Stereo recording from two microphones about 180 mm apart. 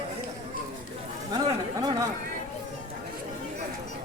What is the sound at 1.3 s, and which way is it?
Chatter, 20° right (ahead or behind).